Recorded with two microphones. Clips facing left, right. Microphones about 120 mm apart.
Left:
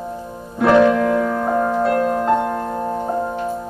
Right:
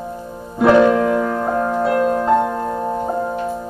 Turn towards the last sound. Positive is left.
turn(degrees=-5)  # may be behind; listen again after turning